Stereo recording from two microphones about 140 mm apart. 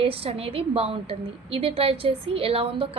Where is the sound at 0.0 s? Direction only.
45° right (ahead or behind).